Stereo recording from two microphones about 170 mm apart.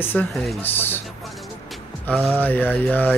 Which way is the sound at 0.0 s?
10° left (ahead or behind).